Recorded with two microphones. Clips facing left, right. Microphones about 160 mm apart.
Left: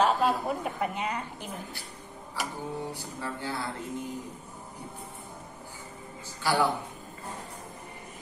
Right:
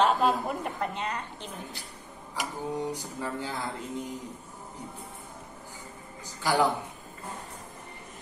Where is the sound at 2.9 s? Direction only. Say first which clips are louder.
Right 3 dB; 20° right (ahead or behind).